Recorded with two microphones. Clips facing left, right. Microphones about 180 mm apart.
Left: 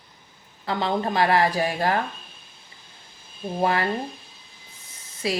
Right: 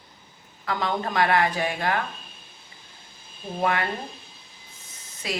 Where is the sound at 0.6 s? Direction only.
30° left (ahead or behind).